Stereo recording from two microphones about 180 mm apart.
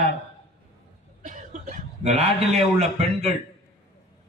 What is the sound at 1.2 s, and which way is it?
A man's voice, 45° right (ahead or behind).